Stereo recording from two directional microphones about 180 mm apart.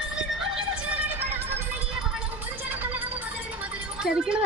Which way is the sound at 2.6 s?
10° right (ahead or behind).